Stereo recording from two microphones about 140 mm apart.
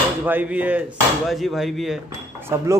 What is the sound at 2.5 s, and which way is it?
Speech, 15° right (ahead or behind).